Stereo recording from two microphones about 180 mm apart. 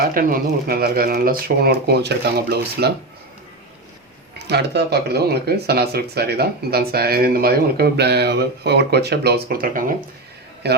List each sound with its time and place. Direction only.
0.1 s speech: 50° right (ahead or behind)
4.4 s a man's voice: 65° right (ahead or behind)